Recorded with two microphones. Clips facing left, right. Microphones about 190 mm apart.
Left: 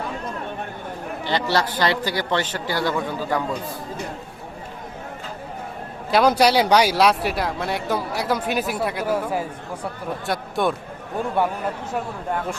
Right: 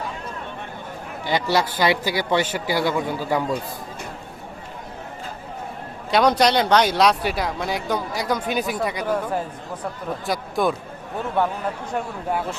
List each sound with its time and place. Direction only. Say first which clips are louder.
1.2 s a man's voice: right 1 dB; 10° right (ahead or behind)
6.1 s speech: left 1 dB; 5° left (ahead or behind)
11.4 s speech: even; 10° left (ahead or behind)